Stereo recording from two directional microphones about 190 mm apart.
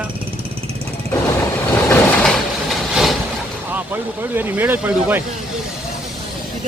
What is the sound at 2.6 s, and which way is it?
Vehicle, centre (ahead or behind).